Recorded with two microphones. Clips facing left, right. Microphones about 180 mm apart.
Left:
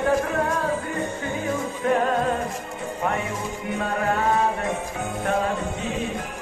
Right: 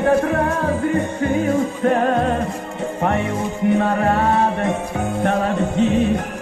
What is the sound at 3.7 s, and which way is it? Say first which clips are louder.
Music: right 4 dB; 65° right (ahead or behind).